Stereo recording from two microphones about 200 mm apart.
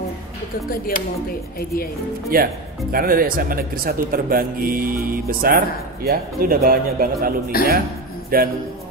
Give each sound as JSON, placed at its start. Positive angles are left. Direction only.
{"t": 0.7, "sound": "speech", "side_deg": 45}
{"t": 2.3, "sound": "speech", "side_deg": -45}
{"t": 7.5, "sound": "speech", "side_deg": 45}
{"t": 8.3, "sound": "speech", "side_deg": -45}